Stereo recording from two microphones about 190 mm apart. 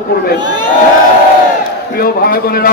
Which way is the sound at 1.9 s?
50° left (ahead or behind).